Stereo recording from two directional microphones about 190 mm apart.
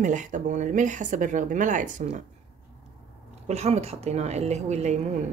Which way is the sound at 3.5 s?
35° right (ahead or behind).